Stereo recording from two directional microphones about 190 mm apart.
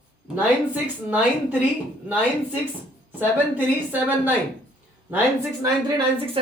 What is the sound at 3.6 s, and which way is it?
Speech, 10° right (ahead or behind).